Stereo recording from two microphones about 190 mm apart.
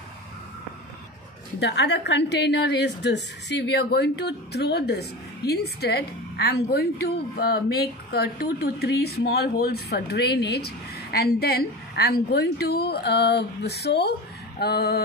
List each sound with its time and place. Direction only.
1.6 s a woman's voice: 65° left (ahead or behind)